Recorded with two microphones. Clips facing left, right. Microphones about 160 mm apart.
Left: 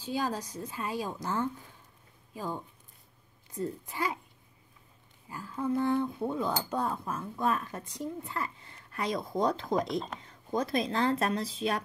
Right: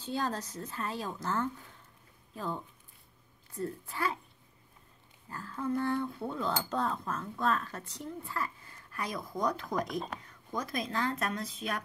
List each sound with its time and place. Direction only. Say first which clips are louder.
0.0 s a woman's voice: left 2 dB; 10° left (ahead or behind)
5.3 s a woman's voice: left 2 dB; 15° left (ahead or behind); by 11.8 s 30° left (ahead or behind)